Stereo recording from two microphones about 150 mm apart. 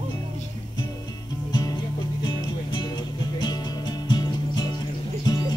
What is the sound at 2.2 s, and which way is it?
Music, 30° left (ahead or behind).